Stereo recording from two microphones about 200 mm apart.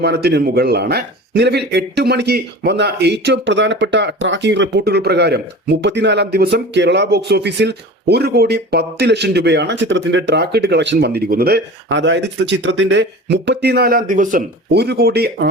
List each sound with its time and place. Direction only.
0.0 s speech: 55° right (ahead or behind)
14.7 s speech: 55° right (ahead or behind)